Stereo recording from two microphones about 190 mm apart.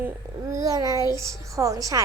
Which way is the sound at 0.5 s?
20° right (ahead or behind).